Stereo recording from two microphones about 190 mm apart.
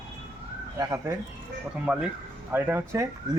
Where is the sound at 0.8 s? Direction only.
15° right (ahead or behind).